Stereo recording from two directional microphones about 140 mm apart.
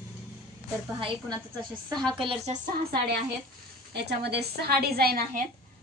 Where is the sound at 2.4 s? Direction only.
65° right (ahead or behind).